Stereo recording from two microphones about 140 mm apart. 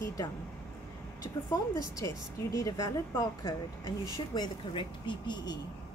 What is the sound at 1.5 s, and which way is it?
A woman's voice, 25° left (ahead or behind).